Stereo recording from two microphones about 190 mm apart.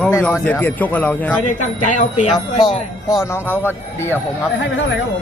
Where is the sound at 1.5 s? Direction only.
40° left (ahead or behind).